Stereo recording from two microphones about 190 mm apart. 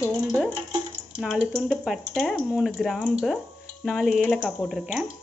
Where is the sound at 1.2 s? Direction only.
Centre (ahead or behind).